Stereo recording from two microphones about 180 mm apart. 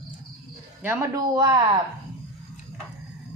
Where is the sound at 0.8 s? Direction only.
15° right (ahead or behind).